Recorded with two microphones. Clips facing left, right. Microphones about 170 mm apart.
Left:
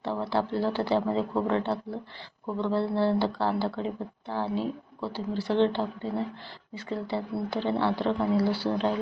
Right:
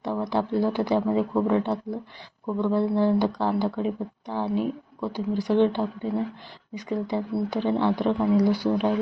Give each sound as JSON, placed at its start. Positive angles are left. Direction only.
{"t": 0.0, "sound": "speech", "side_deg": -15}